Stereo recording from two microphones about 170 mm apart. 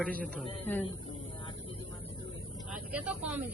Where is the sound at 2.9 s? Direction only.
10° right (ahead or behind).